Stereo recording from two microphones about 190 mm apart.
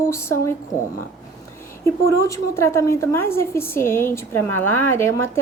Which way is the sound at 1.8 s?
15° left (ahead or behind).